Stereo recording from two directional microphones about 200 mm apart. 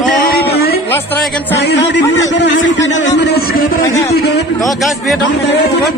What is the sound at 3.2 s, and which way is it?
Music, 55° left (ahead or behind).